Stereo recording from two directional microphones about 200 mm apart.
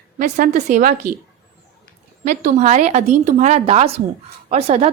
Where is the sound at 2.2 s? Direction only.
40° right (ahead or behind).